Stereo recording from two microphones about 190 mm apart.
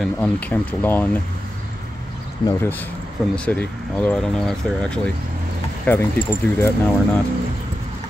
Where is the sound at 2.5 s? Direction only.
10° left (ahead or behind).